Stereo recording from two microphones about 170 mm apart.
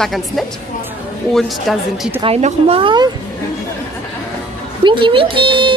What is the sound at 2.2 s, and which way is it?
Speech, 35° right (ahead or behind).